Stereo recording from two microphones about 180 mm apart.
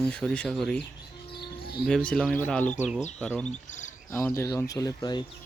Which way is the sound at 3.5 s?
40° left (ahead or behind).